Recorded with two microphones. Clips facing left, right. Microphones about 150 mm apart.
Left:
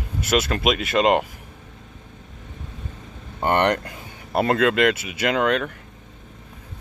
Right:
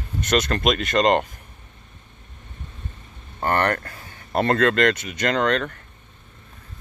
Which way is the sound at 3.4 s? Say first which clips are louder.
Left 2 dB; 20° left (ahead or behind).